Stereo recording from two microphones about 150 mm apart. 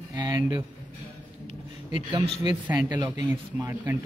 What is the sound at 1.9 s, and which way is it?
Speech, 35° right (ahead or behind).